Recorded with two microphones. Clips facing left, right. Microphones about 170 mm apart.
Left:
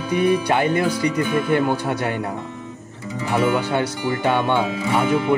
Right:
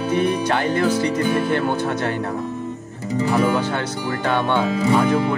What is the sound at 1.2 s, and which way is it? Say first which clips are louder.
Speech: right 1 dB; 40° right (ahead or behind).